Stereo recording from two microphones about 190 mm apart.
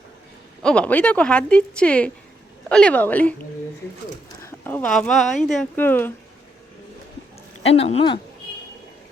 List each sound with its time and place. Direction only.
0.6 s a woman's voice: 5° left (ahead or behind)
4.4 s speech: 10° left (ahead or behind)
7.8 s speech: 30° left (ahead or behind)